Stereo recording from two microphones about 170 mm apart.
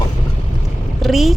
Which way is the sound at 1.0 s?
Centre (ahead or behind).